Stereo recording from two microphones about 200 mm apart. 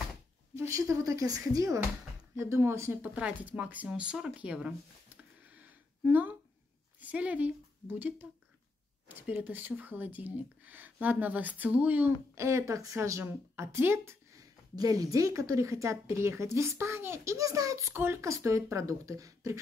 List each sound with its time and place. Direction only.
0.6 s speech: 15° right (ahead or behind)
7.0 s a woman's voice: 5° right (ahead or behind)